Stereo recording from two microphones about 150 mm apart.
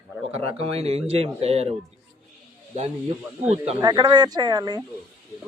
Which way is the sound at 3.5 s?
45° right (ahead or behind).